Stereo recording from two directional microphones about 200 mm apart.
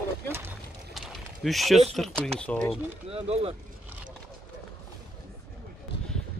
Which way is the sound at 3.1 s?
30° right (ahead or behind).